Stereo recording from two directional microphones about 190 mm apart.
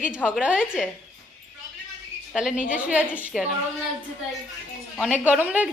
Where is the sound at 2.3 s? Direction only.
Centre (ahead or behind).